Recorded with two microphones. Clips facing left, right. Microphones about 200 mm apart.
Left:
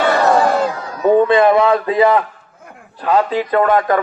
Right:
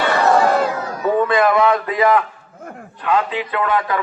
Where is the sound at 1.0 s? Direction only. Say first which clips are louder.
Left 5 dB; 30° left (ahead or behind).